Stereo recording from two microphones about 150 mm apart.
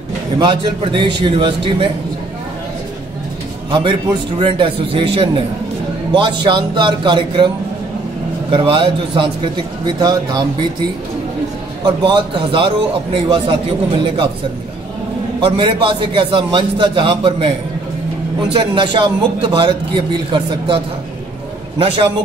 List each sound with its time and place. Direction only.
0.4 s a man's voice: 35° right (ahead or behind)
3.7 s a man's voice: 30° right (ahead or behind)
11.8 s a man's voice: 30° right (ahead or behind)
15.4 s a man's voice: 35° right (ahead or behind)
18.5 s a man's voice: 35° right (ahead or behind)